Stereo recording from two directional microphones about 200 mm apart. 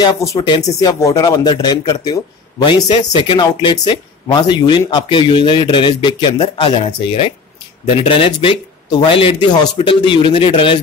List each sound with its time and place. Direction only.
0.0 s speech: 20° left (ahead or behind)